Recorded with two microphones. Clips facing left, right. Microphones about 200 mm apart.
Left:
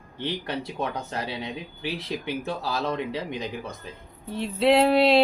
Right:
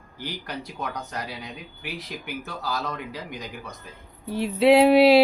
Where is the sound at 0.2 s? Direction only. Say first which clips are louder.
Left 4 dB; 25° left (ahead or behind).